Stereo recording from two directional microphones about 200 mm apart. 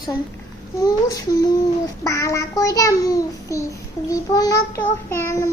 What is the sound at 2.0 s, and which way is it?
A child's voice, 15° left (ahead or behind).